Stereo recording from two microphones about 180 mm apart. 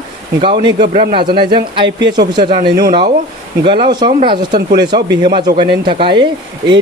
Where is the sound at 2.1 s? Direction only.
25° right (ahead or behind).